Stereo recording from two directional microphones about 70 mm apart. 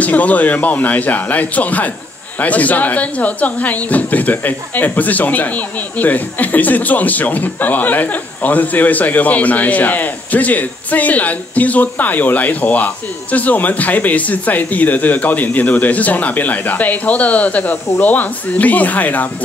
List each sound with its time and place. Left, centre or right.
0.0 s speech: left